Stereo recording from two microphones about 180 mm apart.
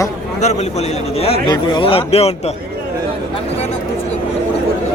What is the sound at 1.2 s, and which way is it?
Speech, 30° left (ahead or behind).